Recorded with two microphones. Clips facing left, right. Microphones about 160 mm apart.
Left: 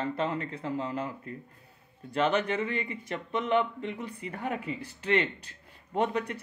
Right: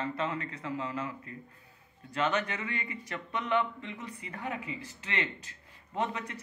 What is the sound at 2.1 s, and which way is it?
A man's voice, 30° left (ahead or behind).